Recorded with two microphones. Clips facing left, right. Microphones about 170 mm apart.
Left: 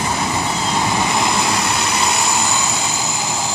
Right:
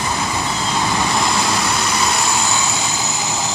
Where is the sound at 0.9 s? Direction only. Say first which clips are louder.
Left 1 dB; 15° left (ahead or behind).